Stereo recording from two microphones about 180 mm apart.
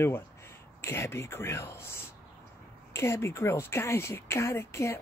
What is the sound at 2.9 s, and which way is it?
A man's voice, 15° left (ahead or behind).